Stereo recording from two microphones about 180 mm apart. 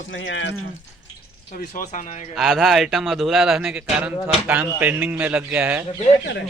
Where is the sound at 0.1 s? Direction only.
90° left.